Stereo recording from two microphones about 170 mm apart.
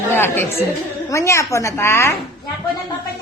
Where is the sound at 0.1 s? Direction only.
15° left (ahead or behind).